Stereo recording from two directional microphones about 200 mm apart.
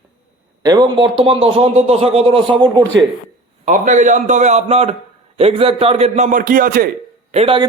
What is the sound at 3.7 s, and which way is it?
A man's voice, 40° right (ahead or behind).